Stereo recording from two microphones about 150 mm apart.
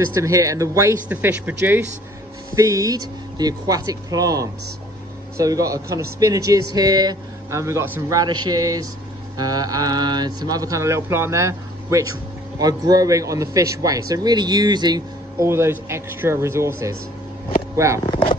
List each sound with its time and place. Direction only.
0.1 s a man's voice: 20° right (ahead or behind)
1.0 s a man's voice: 10° right (ahead or behind)
8.2 s a man's voice: 25° right (ahead or behind)